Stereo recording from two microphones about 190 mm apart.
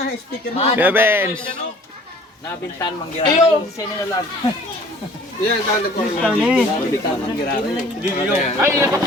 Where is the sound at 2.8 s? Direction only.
20° left (ahead or behind).